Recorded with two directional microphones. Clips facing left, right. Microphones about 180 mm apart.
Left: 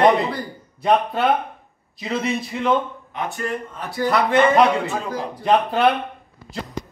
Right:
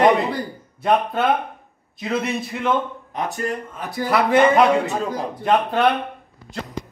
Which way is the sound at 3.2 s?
40° right (ahead or behind).